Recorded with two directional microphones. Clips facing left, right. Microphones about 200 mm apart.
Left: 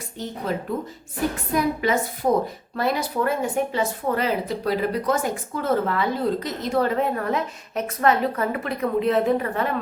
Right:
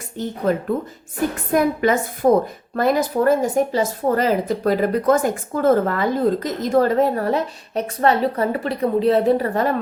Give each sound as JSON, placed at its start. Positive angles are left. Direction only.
{"t": 0.5, "sound": "a woman's voice", "side_deg": -50}
{"t": 2.7, "sound": "speech", "side_deg": -45}